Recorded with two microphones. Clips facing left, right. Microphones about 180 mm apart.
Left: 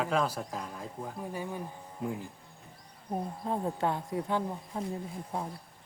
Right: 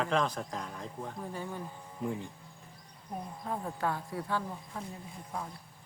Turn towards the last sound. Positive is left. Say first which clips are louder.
# left 4 dB
turn(degrees=30)  # may be behind; listen again after turning